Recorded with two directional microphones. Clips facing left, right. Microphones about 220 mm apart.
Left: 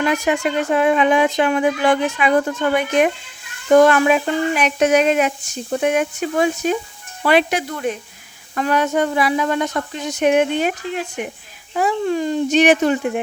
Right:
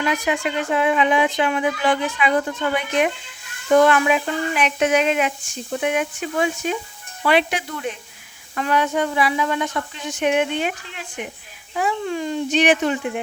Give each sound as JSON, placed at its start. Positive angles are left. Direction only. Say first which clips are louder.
{"t": 0.0, "sound": "speech", "louder": "left 4 dB", "side_deg": 45}